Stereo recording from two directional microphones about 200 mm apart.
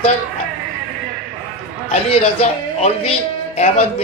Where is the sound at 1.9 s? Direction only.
30° left (ahead or behind).